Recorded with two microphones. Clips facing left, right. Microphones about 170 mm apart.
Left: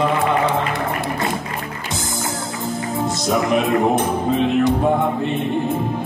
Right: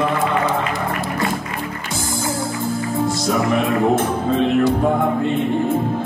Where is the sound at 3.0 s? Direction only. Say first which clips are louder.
Left 1 dB; 20° left (ahead or behind).